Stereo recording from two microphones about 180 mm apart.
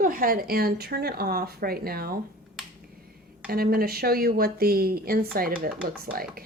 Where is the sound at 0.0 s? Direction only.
50° right (ahead or behind).